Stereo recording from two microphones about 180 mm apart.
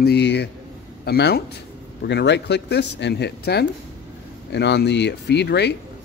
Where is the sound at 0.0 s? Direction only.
70° left (ahead or behind).